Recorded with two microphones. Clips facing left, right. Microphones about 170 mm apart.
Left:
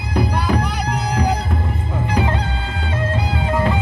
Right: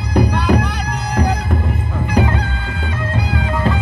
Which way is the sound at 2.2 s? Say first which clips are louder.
Right 1 dB; 30° left (ahead or behind).